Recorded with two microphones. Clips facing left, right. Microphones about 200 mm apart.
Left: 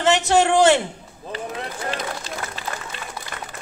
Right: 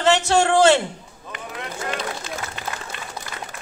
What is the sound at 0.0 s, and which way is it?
Speech, 20° left (ahead or behind).